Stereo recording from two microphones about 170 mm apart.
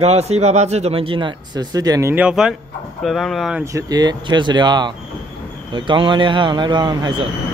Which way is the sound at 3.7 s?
20° right (ahead or behind).